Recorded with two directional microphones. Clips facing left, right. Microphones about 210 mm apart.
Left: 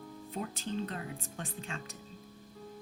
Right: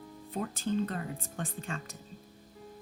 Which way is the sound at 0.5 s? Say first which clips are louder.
Right 5 dB; 50° right (ahead or behind).